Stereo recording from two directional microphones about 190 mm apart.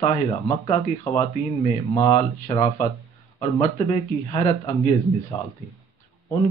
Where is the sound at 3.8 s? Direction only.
35° left (ahead or behind).